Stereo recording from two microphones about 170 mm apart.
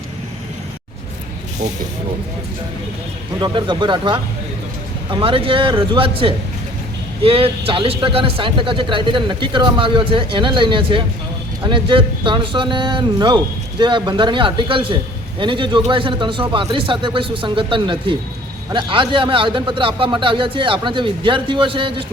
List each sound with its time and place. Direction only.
3.4 s speech: 25° right (ahead or behind)